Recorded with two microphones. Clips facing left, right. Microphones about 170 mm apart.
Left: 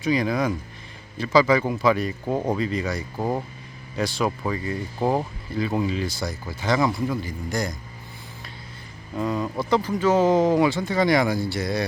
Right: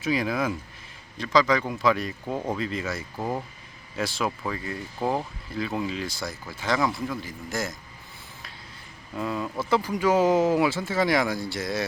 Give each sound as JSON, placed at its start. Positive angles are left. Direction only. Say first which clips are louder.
{"t": 0.0, "sound": "speech", "louder": "left 3 dB", "side_deg": -5}
{"t": 2.2, "sound": "speech", "louder": "left 5 dB", "side_deg": 20}
{"t": 2.6, "sound": "speech", "louder": "left 4 dB", "side_deg": 0}
{"t": 3.2, "sound": "speech", "louder": "left 4 dB", "side_deg": 15}
{"t": 3.9, "sound": "speech", "louder": "left 4 dB", "side_deg": 0}
{"t": 9.1, "sound": "speech", "louder": "left 4 dB", "side_deg": 0}